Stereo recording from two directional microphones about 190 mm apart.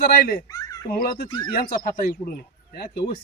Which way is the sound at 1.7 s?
45° left (ahead or behind).